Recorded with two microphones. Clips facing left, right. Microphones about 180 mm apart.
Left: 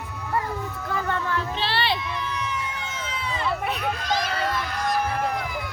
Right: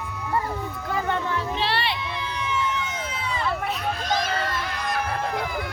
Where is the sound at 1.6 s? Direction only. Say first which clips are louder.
Even; 30° left (ahead or behind).